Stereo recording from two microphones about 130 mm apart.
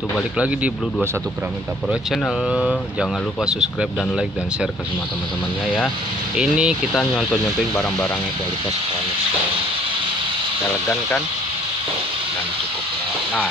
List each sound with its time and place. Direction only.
2.5 s speech: 5° right (ahead or behind)
6.3 s speech: 5° right (ahead or behind)
10.9 s speech: 10° left (ahead or behind)